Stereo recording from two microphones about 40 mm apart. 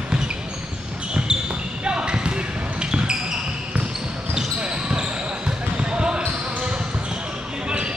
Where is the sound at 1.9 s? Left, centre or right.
Right.